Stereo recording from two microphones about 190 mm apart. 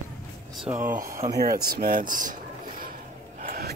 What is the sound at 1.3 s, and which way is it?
Speech, 55° right (ahead or behind).